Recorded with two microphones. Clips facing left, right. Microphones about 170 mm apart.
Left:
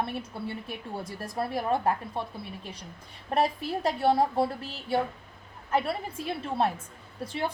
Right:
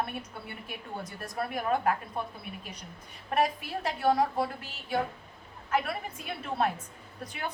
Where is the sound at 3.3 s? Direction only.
35° left (ahead or behind).